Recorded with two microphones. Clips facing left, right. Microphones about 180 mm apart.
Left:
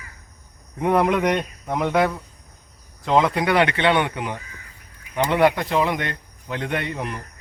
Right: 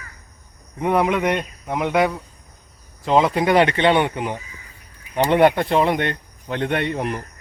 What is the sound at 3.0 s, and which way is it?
Speech, 20° right (ahead or behind).